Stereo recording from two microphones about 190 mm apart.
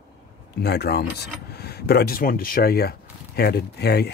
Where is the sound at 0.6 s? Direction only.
60° left (ahead or behind).